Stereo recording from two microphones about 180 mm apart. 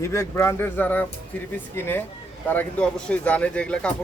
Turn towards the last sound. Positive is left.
turn(degrees=5)  # may be behind; listen again after turning